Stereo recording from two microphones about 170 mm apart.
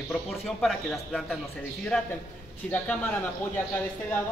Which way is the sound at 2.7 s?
10° left (ahead or behind).